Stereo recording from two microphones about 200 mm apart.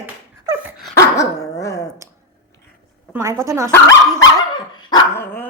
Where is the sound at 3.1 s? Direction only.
15° right (ahead or behind).